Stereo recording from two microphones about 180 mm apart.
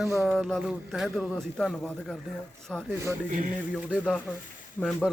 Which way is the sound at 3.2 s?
45° right (ahead or behind).